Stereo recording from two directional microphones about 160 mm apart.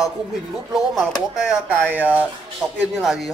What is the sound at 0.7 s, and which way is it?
A man's voice, 5° right (ahead or behind).